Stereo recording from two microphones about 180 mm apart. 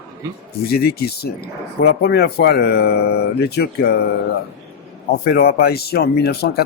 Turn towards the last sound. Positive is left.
turn(degrees=60)  # may be behind; listen again after turning